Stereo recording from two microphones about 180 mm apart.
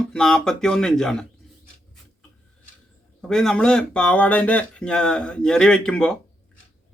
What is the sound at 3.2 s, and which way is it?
Speech, 5° left (ahead or behind).